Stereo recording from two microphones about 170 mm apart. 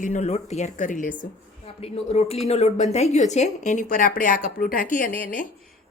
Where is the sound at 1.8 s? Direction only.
35° left (ahead or behind).